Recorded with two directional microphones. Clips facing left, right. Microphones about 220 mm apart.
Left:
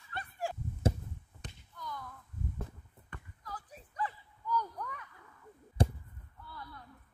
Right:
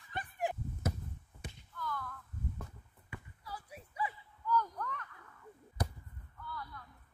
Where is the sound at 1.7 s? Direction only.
20° left (ahead or behind).